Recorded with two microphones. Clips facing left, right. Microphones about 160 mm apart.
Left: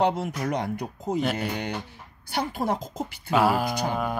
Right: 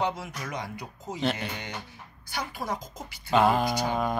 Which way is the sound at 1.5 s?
55° left (ahead or behind).